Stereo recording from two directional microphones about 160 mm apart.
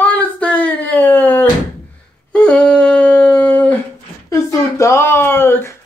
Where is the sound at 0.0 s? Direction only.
10° left (ahead or behind).